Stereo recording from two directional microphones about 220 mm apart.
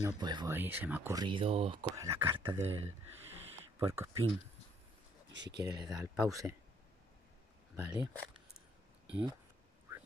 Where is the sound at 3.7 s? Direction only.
10° right (ahead or behind).